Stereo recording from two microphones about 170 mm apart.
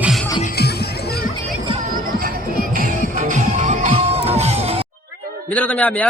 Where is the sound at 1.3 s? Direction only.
30° right (ahead or behind).